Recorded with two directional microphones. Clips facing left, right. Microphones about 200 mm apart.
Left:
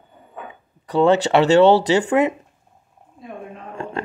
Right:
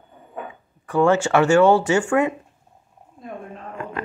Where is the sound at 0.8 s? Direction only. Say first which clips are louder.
Left 2 dB; 20° left (ahead or behind).